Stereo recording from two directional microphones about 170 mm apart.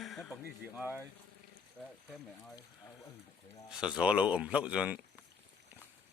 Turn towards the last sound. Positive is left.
turn(degrees=-10)  # may be behind; listen again after turning